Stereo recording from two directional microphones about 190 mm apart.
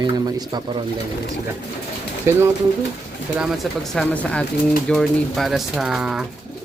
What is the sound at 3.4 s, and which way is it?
Speech, centre (ahead or behind).